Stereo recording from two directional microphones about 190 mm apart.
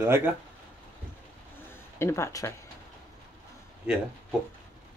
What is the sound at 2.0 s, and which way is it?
Speech, 15° left (ahead or behind).